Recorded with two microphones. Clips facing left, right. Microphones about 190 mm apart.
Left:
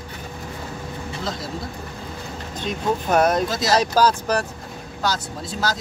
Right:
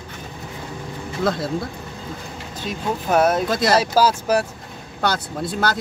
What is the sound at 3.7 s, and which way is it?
Speech, 10° right (ahead or behind).